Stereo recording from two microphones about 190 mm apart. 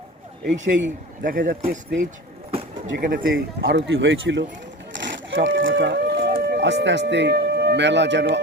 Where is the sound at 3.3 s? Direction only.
80° right.